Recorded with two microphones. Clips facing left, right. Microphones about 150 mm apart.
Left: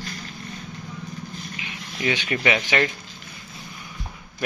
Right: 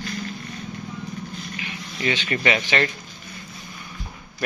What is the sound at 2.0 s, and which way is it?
Speech, 15° left (ahead or behind).